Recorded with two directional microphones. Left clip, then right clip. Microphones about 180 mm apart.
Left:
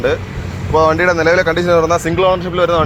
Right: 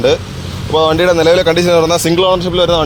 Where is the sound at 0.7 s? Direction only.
40° right (ahead or behind).